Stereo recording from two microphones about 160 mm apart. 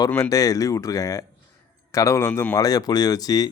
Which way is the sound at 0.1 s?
20° left (ahead or behind).